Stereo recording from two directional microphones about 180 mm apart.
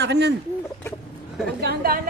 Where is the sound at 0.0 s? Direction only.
70° right (ahead or behind).